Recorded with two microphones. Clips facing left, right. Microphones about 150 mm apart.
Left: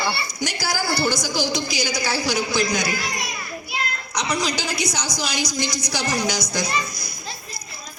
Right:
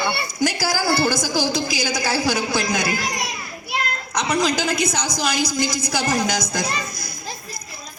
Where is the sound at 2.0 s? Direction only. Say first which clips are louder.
Right 3 dB; 45° right (ahead or behind).